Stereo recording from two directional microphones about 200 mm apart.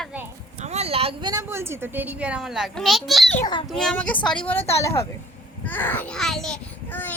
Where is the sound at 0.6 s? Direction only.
35° right (ahead or behind).